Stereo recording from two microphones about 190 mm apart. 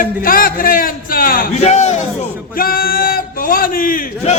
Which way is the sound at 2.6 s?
50° left (ahead or behind).